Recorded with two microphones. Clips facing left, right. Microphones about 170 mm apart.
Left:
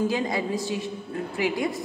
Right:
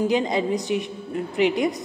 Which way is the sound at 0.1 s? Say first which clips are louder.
Right 4 dB; 20° right (ahead or behind).